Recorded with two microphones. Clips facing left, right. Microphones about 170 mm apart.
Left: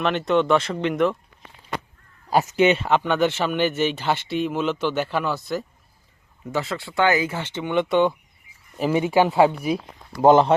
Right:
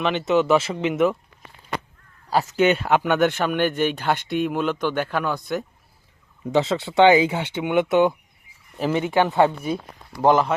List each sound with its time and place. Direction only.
0.0 s speech: centre (ahead or behind)
2.3 s speech: 20° left (ahead or behind)
2.6 s speech: centre (ahead or behind)
6.5 s speech: 20° right (ahead or behind); by 8.1 s 5° right (ahead or behind)
8.8 s speech: 10° left (ahead or behind)
10.2 s speech: 25° left (ahead or behind)